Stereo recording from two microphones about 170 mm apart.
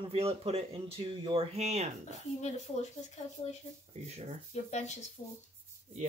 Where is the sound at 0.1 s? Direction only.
35° right (ahead or behind).